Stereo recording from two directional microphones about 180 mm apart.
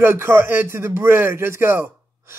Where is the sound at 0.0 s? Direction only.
15° right (ahead or behind).